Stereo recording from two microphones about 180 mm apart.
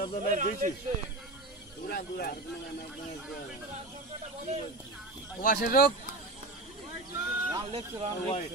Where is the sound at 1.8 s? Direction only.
55° left (ahead or behind).